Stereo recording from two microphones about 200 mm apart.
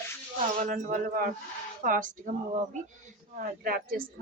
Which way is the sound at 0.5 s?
45° right (ahead or behind).